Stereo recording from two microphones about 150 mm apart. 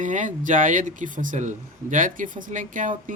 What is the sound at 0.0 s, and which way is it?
Speech, 60° right (ahead or behind).